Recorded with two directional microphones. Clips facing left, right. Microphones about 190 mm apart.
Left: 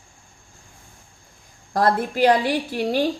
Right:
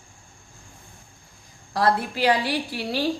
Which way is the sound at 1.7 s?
45° left (ahead or behind).